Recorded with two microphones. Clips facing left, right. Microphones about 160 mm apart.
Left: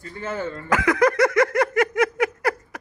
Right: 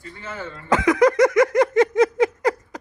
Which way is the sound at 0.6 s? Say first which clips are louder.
Right 3 dB; 20° right (ahead or behind).